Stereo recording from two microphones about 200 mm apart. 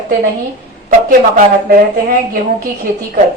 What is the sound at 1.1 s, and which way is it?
Speech, 45° right (ahead or behind).